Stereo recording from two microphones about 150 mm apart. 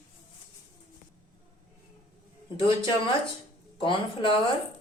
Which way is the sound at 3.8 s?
35° left (ahead or behind).